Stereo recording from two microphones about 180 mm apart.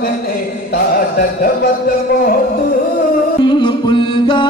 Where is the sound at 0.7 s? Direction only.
55° left (ahead or behind).